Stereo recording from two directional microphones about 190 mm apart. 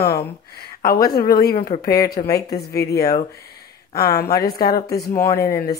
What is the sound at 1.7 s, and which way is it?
Speech, 35° left (ahead or behind).